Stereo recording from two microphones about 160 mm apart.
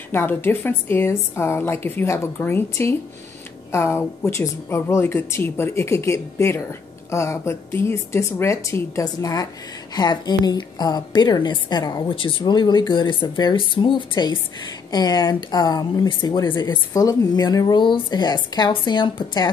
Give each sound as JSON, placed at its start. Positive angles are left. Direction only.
{"t": 0.1, "sound": "a woman's voice", "side_deg": 15}